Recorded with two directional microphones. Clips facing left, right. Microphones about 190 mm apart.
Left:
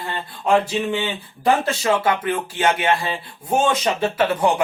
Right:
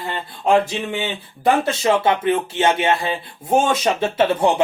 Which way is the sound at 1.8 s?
25° right (ahead or behind).